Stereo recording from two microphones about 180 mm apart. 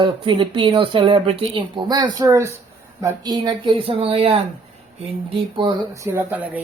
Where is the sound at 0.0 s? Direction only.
25° right (ahead or behind).